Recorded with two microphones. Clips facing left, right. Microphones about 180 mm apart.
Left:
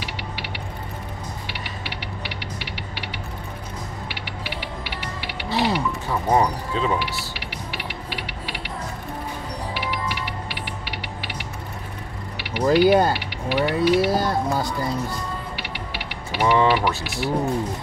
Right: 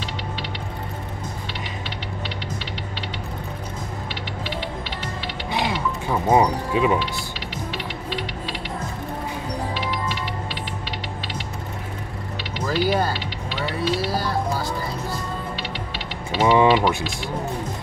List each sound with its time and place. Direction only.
5.5 s mechanisms: 15° right (ahead or behind)
8.1 s music: 10° left (ahead or behind)
12.6 s a sound: 20° left (ahead or behind)
15.5 s music: 10° left (ahead or behind)
16.3 s speech: 20° right (ahead or behind)